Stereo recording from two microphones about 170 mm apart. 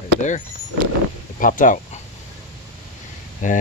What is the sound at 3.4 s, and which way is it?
Speech, 50° left (ahead or behind).